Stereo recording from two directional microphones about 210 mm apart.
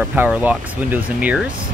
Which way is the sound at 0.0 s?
5° right (ahead or behind).